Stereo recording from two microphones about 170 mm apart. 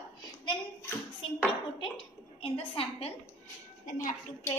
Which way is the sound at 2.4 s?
30° left (ahead or behind).